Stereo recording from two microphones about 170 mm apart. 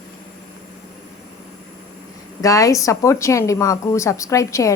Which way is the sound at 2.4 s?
20° left (ahead or behind).